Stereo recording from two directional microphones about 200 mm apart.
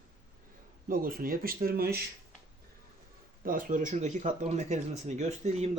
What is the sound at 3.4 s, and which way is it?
Speech, 45° right (ahead or behind).